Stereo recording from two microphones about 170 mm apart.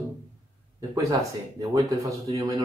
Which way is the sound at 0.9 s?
20° right (ahead or behind).